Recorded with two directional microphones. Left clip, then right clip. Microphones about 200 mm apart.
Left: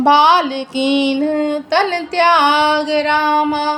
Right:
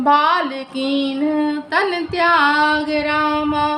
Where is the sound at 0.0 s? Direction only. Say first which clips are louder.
Left 4 dB; 20° left (ahead or behind).